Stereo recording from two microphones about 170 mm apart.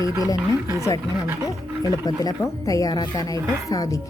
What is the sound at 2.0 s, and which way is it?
A woman's voice, 20° left (ahead or behind).